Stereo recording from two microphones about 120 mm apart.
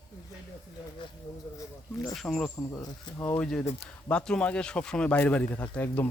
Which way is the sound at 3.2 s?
20° left (ahead or behind).